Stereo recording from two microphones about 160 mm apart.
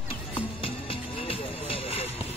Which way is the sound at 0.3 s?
35° left (ahead or behind).